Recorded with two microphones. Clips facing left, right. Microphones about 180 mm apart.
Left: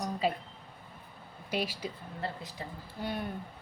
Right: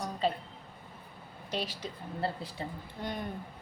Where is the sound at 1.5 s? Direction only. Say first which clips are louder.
Left 2 dB; 10° left (ahead or behind).